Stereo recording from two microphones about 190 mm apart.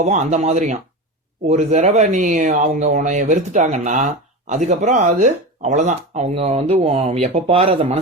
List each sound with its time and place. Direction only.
0.0 s speech: 35° right (ahead or behind)